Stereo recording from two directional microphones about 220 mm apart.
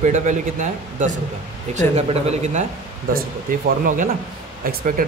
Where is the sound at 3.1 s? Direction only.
40° right (ahead or behind).